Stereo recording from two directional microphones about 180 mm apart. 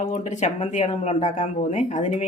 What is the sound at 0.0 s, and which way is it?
Speech, 40° left (ahead or behind).